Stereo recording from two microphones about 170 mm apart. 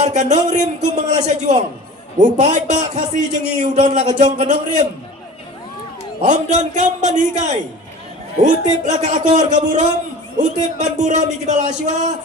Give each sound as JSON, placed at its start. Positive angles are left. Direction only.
{"t": 0.0, "sound": "a man's voice", "side_deg": -45}
{"t": 6.2, "sound": "a man's voice", "side_deg": -45}